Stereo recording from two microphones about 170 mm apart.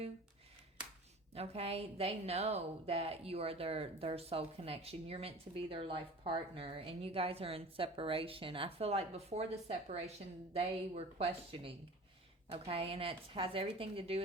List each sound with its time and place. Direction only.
1.3 s a woman's voice: 35° right (ahead or behind)